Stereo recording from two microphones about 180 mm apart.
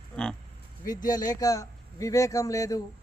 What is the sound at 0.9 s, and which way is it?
Speech, 20° left (ahead or behind).